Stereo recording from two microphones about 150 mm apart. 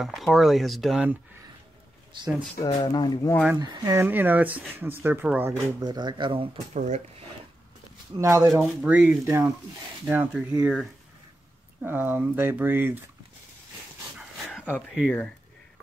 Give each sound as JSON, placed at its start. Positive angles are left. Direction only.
{"t": 0.0, "sound": "speech", "side_deg": 0}
{"t": 2.1, "sound": "speech", "side_deg": -30}
{"t": 2.6, "sound": "speech", "side_deg": 25}
{"t": 3.5, "sound": "speech", "side_deg": -25}
{"t": 5.8, "sound": "speech", "side_deg": -30}
{"t": 6.7, "sound": "speech", "side_deg": -50}
{"t": 8.2, "sound": "speech", "side_deg": -20}